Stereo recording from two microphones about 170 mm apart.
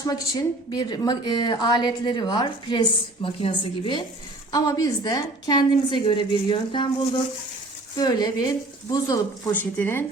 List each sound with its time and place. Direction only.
0.0 s a woman's voice: 20° left (ahead or behind)
7.9 s a woman's voice: 25° left (ahead or behind)